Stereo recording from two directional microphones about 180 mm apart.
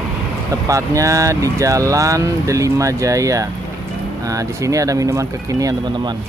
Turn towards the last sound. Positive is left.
turn(degrees=-20)  # may be behind; listen again after turning